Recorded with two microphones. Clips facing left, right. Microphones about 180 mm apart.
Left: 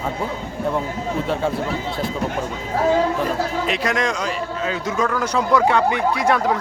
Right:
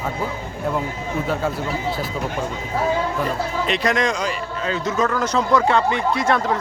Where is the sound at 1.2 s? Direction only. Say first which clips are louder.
Even; centre (ahead or behind).